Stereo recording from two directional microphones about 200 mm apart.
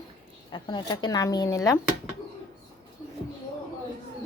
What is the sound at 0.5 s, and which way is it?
Speech, 20° left (ahead or behind).